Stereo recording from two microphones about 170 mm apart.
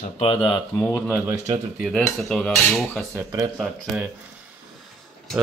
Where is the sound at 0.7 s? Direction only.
15° left (ahead or behind).